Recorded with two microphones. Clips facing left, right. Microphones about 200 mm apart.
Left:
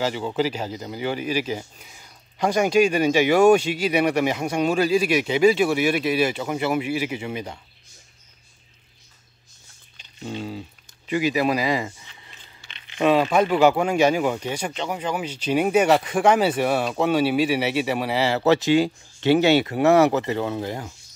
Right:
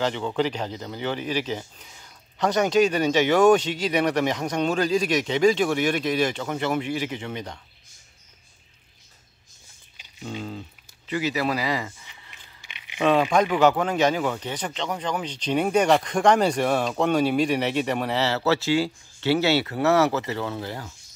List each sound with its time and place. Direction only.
0.0 s speech: 10° left (ahead or behind)
11.1 s speech: 15° left (ahead or behind)
12.1 s a sound: 15° right (ahead or behind)
12.6 s crumpling: 10° right (ahead or behind)
13.0 s speech: 5° left (ahead or behind)